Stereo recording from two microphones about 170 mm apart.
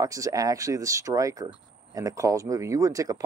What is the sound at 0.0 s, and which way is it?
Speech, 20° right (ahead or behind).